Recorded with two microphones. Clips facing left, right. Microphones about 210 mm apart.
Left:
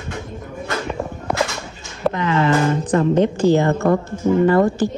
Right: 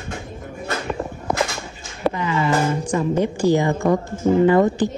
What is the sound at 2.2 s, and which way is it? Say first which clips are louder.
Speech: left 6 dB; 65° left (ahead or behind).